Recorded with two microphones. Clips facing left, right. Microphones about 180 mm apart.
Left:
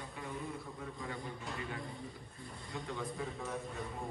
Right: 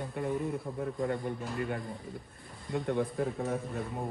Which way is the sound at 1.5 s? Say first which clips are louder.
Right 8 dB; 55° right (ahead or behind).